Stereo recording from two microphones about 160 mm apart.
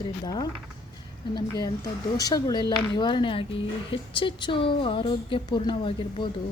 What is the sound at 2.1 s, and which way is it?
A woman's voice, 25° left (ahead or behind).